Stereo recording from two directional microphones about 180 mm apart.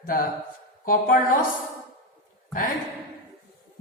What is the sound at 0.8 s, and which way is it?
Speech, 50° left (ahead or behind).